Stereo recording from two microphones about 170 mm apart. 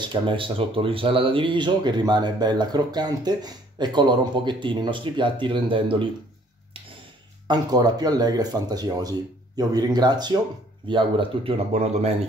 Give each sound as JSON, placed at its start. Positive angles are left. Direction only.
{"t": 0.0, "sound": "speech", "side_deg": -30}
{"t": 7.4, "sound": "speech", "side_deg": -25}